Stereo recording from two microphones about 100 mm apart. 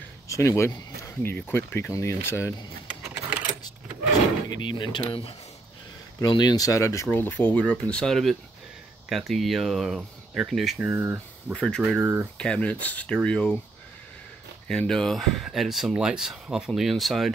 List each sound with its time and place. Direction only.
0.3 s speech: 30° left (ahead or behind)
4.5 s speech: 50° left (ahead or behind)
6.2 s speech: 45° left (ahead or behind)
7.1 s speech: 15° left (ahead or behind); by 10.8 s centre (ahead or behind)
10.8 s speech: 20° right (ahead or behind)
11.5 s speech: 5° left (ahead or behind)
12.0 s speech: 20° right (ahead or behind)
12.4 s speech: 10° left (ahead or behind)
14.7 s speech: 5° left (ahead or behind)